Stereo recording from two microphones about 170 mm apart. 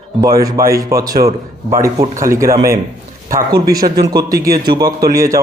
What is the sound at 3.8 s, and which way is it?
Speech, 70° right (ahead or behind).